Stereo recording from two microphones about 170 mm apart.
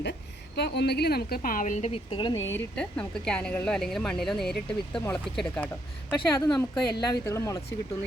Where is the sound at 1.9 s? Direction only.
30° left (ahead or behind).